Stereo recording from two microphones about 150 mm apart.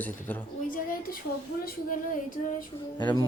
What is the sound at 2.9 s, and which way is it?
Speech, 30° left (ahead or behind).